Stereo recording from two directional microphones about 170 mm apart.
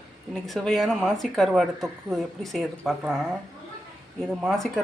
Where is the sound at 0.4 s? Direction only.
Centre (ahead or behind).